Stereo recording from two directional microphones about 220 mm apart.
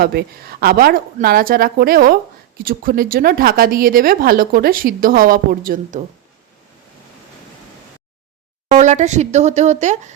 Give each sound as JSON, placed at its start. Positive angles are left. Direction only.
{"t": 0.0, "sound": "speech", "side_deg": -45}
{"t": 8.7, "sound": "speech", "side_deg": -30}